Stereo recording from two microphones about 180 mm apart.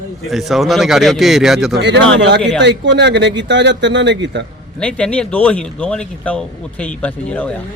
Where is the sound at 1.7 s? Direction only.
75° right (ahead or behind).